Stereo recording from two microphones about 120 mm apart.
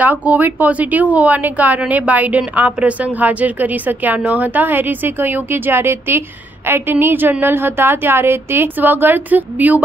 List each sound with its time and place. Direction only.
0.0 s a woman's voice: 10° right (ahead or behind)